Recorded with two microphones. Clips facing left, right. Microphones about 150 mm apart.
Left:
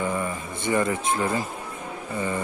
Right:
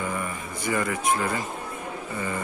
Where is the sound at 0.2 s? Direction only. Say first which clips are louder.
Left 3 dB; 25° left (ahead or behind).